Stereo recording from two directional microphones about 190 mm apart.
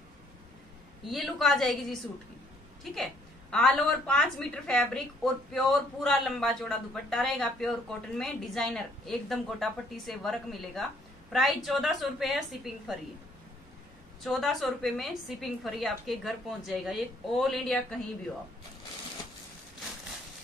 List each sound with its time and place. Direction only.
1.0 s a woman's voice: centre (ahead or behind)
14.2 s a woman's voice: centre (ahead or behind)